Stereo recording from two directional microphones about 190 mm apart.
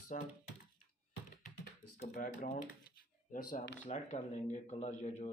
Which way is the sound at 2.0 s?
40° left (ahead or behind).